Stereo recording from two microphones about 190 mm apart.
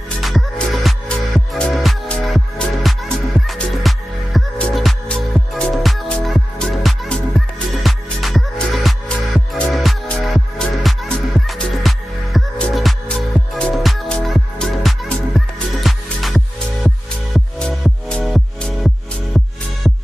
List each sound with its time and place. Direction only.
0.2 s music: centre (ahead or behind)